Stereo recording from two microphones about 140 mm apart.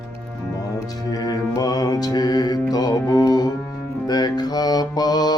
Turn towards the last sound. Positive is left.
turn(degrees=30)  # may be behind; listen again after turning